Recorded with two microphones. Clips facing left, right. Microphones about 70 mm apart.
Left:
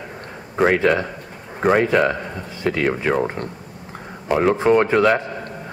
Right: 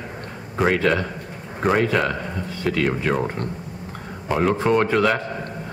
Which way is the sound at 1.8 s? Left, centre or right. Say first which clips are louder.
Left 3 dB; left.